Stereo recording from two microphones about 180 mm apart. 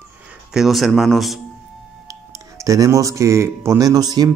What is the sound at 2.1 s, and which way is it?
Speech, 20° right (ahead or behind).